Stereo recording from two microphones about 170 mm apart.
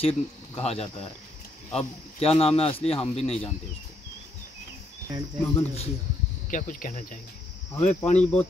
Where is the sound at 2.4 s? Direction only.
35° left (ahead or behind).